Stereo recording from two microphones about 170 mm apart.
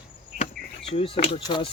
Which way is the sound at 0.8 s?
35° left (ahead or behind).